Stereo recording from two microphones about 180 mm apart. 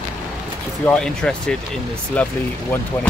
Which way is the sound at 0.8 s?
5° left (ahead or behind).